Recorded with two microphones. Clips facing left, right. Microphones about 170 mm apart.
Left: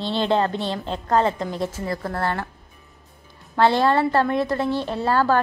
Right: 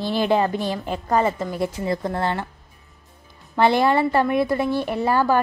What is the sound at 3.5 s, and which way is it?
A woman's voice, 15° right (ahead or behind).